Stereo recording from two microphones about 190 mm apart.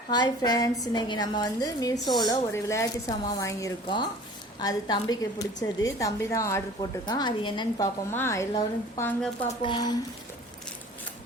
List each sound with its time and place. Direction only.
0.1 s a woman's voice: 20° left (ahead or behind)
8.1 s a woman's voice: 15° left (ahead or behind)
9.5 s speech: 25° left (ahead or behind)